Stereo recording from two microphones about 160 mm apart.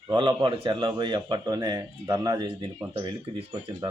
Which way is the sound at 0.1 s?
30° right (ahead or behind).